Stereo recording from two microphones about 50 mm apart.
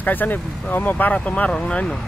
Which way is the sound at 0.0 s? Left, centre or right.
Left.